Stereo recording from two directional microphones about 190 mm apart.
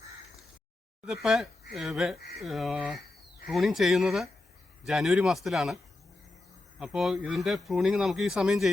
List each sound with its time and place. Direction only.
1.0 s speech: 5° right (ahead or behind)
6.7 s speech: 5° right (ahead or behind)